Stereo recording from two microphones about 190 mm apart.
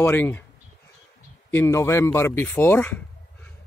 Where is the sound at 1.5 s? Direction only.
15° left (ahead or behind).